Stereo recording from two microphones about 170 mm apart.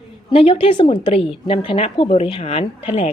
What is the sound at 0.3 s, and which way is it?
A woman's voice, 35° left (ahead or behind).